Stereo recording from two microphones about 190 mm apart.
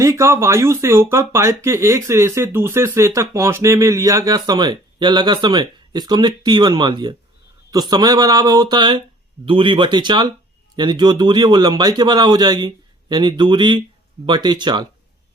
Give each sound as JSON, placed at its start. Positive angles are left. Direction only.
{"t": 0.0, "sound": "a man's voice", "side_deg": -15}